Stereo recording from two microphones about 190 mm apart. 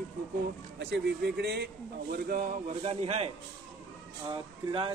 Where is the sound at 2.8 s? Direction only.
30° right (ahead or behind).